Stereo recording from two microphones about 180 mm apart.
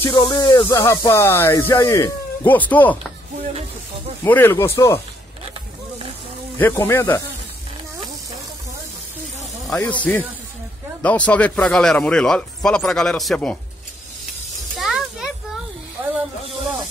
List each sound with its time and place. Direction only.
0.1 s speech: 25° left (ahead or behind); by 3.0 s 10° left (ahead or behind)
4.2 s speech: 10° left (ahead or behind)
6.6 s speech: 15° left (ahead or behind)
9.8 s speech: 10° left (ahead or behind)
14.8 s a sound: centre (ahead or behind)